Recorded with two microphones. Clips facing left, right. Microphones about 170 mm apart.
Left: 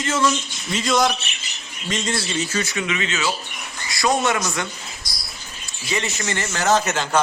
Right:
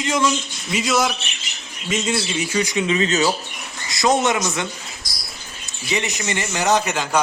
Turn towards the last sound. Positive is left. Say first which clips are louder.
# even
turn(degrees=-10)  # may be behind; listen again after turning